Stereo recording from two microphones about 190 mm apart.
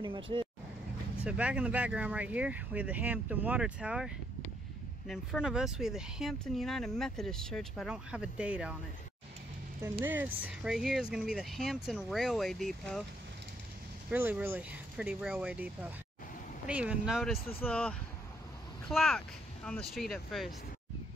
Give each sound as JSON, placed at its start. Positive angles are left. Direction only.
{"t": 0.0, "sound": "speech", "side_deg": -25}
{"t": 1.2, "sound": "speech", "side_deg": -5}
{"t": 10.0, "sound": "speech", "side_deg": -10}
{"t": 14.1, "sound": "speech", "side_deg": -10}